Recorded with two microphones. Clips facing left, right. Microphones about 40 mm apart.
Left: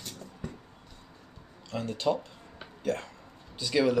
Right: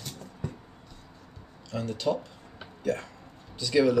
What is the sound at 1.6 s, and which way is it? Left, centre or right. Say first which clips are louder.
Speech: even; left.